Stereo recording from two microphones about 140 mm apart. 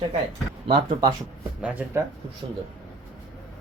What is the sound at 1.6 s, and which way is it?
Speech, 10° right (ahead or behind).